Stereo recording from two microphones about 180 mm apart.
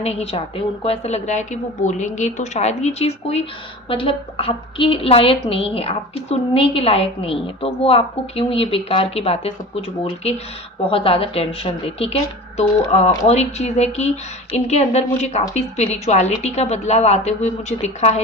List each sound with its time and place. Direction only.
0.0 s a woman's voice: 35° left (ahead or behind)